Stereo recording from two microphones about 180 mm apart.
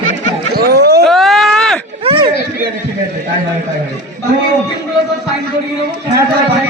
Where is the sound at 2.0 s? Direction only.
30° right (ahead or behind).